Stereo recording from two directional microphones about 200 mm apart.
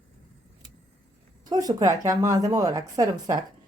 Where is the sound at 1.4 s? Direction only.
20° right (ahead or behind).